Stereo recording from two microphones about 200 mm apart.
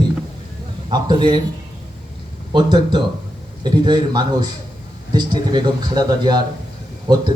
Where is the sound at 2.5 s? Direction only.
20° right (ahead or behind).